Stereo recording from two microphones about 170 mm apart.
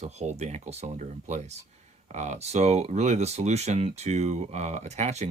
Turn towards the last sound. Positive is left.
turn(degrees=-40)  # may be behind; listen again after turning